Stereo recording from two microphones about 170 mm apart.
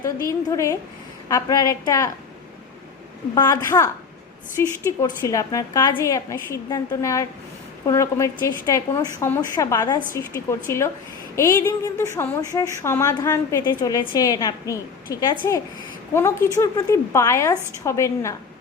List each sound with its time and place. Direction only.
0.3 s a woman's voice: 20° left (ahead or behind)
3.3 s a woman's voice: 20° left (ahead or behind)